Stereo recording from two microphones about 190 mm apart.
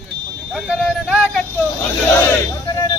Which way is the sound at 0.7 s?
5° right (ahead or behind).